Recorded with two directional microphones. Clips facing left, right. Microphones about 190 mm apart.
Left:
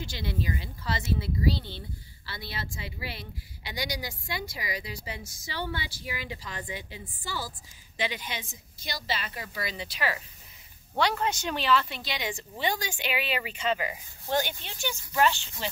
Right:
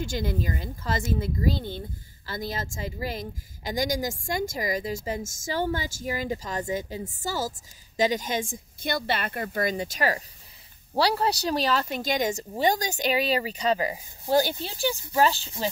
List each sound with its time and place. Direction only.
0.0 s speech: 45° right (ahead or behind)